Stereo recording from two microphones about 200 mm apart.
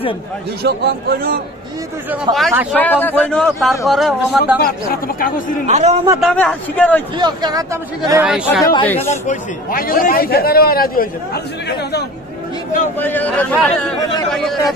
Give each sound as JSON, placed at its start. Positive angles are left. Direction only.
{"t": 0.7, "sound": "a man's voice", "side_deg": -50}
{"t": 2.3, "sound": "speech", "side_deg": -20}
{"t": 2.7, "sound": "a man's voice", "side_deg": 10}
{"t": 4.6, "sound": "a man's voice", "side_deg": 45}
{"t": 5.7, "sound": "a man's voice", "side_deg": -35}
{"t": 6.2, "sound": "a man's voice", "side_deg": 5}
{"t": 7.2, "sound": "speech", "side_deg": -20}
{"t": 8.2, "sound": "speech", "side_deg": -5}
{"t": 8.8, "sound": "a man's voice", "side_deg": 10}
{"t": 9.1, "sound": "a man's voice", "side_deg": 40}
{"t": 12.9, "sound": "a man's voice", "side_deg": 10}